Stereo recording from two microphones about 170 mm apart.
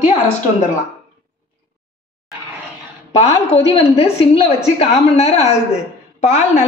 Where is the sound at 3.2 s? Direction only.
40° left (ahead or behind).